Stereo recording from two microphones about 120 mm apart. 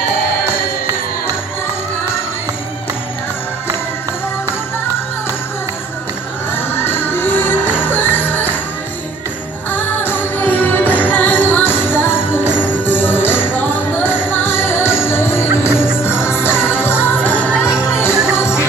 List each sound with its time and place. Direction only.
6.5 s music: 20° left (ahead or behind)
9.7 s music: 15° left (ahead or behind)